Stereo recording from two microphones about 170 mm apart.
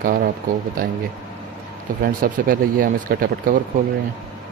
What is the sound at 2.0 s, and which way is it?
Speech, 55° right (ahead or behind).